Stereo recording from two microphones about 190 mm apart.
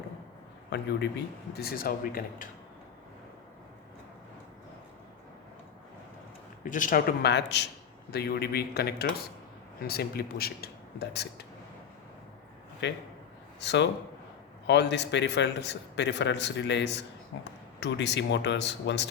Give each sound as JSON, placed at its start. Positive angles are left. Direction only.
{"t": 0.7, "sound": "a man's voice", "side_deg": 65}
{"t": 1.5, "sound": "speech", "side_deg": 50}
{"t": 6.7, "sound": "speech", "side_deg": 45}
{"t": 7.2, "sound": "a man's voice", "side_deg": 65}
{"t": 12.8, "sound": "a man's voice", "side_deg": 70}